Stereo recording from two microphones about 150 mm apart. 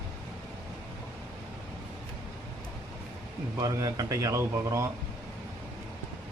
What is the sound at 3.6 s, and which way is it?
Speech, 25° right (ahead or behind).